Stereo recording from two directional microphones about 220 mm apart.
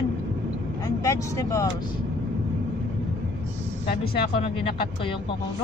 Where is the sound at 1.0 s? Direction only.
15° left (ahead or behind).